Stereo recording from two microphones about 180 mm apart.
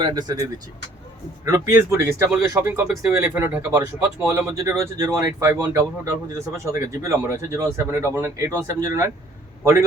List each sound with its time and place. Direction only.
0.0 s speech: 20° right (ahead or behind)
1.5 s speech: 15° right (ahead or behind)